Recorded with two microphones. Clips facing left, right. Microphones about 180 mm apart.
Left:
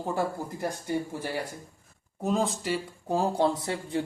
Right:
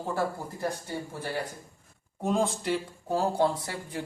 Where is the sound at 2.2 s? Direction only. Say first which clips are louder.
Even; centre (ahead or behind).